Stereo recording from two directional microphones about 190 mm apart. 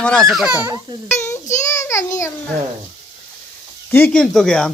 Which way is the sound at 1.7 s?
15° left (ahead or behind).